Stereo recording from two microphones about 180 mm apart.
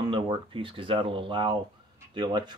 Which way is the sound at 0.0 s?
30° right (ahead or behind).